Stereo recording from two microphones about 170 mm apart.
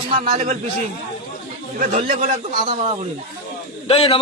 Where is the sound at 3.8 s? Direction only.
35° left (ahead or behind).